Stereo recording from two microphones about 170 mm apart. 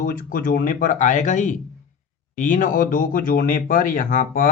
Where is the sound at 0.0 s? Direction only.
55° left (ahead or behind).